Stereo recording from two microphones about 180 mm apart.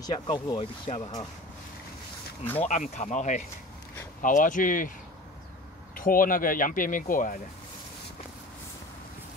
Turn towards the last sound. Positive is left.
turn(degrees=50)  # may be behind; listen again after turning